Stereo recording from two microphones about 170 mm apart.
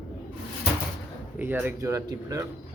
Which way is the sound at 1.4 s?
10° right (ahead or behind).